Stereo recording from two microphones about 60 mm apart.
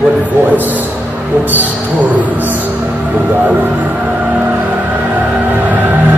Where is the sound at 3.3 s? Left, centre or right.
Right.